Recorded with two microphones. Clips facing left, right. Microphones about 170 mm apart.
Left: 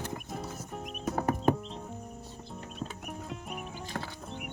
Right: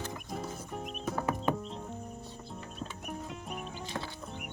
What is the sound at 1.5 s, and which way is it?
Music, 45° left (ahead or behind).